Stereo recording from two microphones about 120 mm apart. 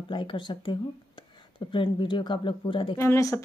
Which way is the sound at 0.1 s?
40° left (ahead or behind).